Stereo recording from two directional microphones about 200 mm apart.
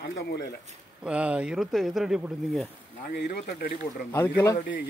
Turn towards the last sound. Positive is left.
turn(degrees=15)  # may be behind; listen again after turning